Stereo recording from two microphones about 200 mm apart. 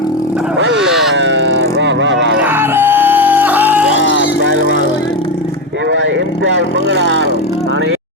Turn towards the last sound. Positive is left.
turn(degrees=-60)  # may be behind; listen again after turning